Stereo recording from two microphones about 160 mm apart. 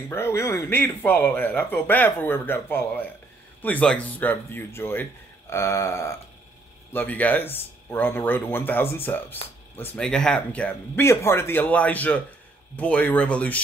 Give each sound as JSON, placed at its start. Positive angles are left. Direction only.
{"t": 0.1, "sound": "a man's voice", "side_deg": 15}